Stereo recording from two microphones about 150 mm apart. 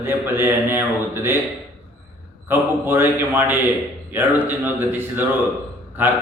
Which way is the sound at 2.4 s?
15° right (ahead or behind).